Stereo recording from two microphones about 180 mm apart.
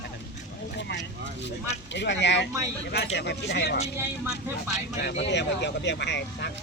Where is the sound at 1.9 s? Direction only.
75° left (ahead or behind).